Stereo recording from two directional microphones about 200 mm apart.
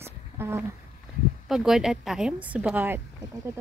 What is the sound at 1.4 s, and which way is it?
A woman's voice, centre (ahead or behind).